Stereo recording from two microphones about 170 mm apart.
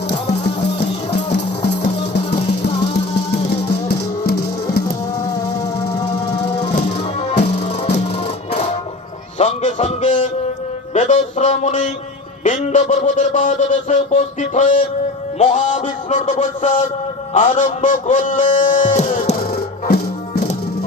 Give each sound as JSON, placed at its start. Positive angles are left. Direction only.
{"t": 1.1, "sound": "music", "side_deg": 80}
{"t": 3.3, "sound": "music", "side_deg": 75}
{"t": 7.2, "sound": "music", "side_deg": 35}
{"t": 9.4, "sound": "a sound", "side_deg": 45}
{"t": 10.9, "sound": "music", "side_deg": 45}
{"t": 12.4, "sound": "a sound", "side_deg": 45}
{"t": 19.9, "sound": "music", "side_deg": 70}